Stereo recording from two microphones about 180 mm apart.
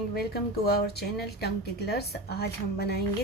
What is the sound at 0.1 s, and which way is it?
A woman's voice, 60° left (ahead or behind).